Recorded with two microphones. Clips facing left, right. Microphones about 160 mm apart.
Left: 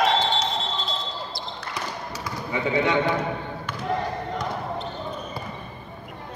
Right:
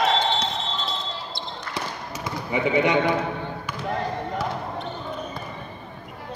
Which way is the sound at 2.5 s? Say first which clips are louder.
Right 2 dB; 15° right (ahead or behind).